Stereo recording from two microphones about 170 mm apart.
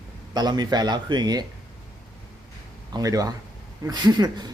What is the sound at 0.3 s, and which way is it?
Speech, 25° right (ahead or behind).